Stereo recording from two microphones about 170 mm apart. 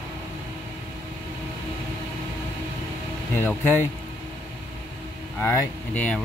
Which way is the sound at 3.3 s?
10° left (ahead or behind).